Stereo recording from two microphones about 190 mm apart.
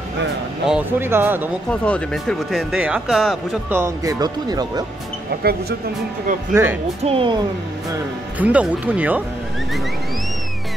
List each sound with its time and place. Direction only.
0.7 s speech: 10° right (ahead or behind)
1.7 s speech: 5° left (ahead or behind)
3.7 s speech: 15° right (ahead or behind)
5.4 s speech: 55° right (ahead or behind)
6.5 s speech: 10° right (ahead or behind)
7.1 s speech: 30° right (ahead or behind)
8.4 s speech: 10° right (ahead or behind)